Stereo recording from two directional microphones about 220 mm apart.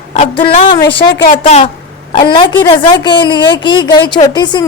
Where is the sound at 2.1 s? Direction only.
20° left (ahead or behind).